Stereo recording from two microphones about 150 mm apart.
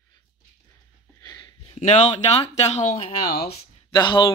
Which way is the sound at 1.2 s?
30° left (ahead or behind).